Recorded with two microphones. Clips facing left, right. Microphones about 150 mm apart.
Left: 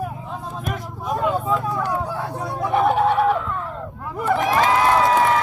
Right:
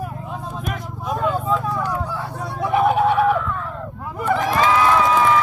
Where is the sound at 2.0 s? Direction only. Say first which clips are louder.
Left 1 dB; 50° left (ahead or behind).